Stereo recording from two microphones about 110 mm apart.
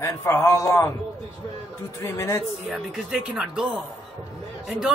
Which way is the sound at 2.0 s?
20° left (ahead or behind).